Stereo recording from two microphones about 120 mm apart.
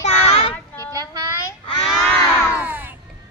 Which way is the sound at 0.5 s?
15° left (ahead or behind).